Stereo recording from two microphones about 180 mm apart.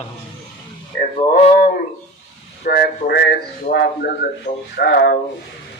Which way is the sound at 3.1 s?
70° left (ahead or behind).